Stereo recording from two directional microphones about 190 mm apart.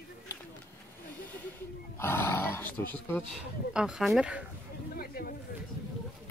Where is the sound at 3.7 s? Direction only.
5° right (ahead or behind).